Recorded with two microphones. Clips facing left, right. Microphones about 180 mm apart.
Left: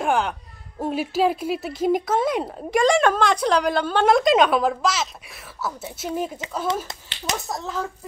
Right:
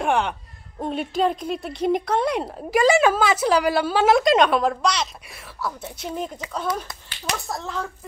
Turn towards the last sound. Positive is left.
turn(degrees=0)  # may be behind; listen again after turning